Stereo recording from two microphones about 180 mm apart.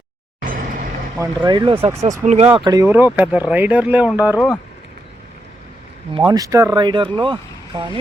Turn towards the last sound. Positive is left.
turn(degrees=-25)  # may be behind; listen again after turning